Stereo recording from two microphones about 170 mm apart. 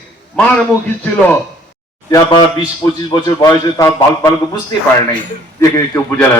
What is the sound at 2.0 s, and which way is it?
A man's voice, 20° left (ahead or behind).